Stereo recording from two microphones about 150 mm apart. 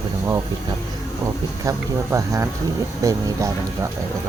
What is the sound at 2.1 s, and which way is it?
Speech, 20° right (ahead or behind).